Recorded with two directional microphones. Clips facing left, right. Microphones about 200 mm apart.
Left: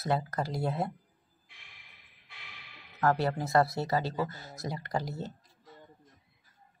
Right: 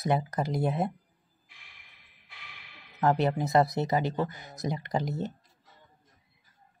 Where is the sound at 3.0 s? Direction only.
20° right (ahead or behind).